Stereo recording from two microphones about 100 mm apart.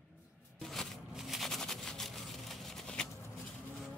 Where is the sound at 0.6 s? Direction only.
5° left (ahead or behind).